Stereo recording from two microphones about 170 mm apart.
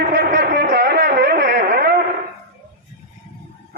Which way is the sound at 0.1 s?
70° right (ahead or behind).